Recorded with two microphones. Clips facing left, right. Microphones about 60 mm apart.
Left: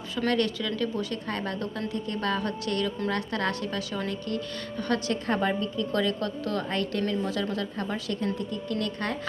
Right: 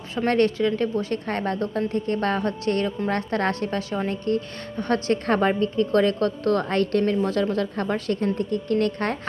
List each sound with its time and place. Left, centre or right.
0.3 s a woman's voice: right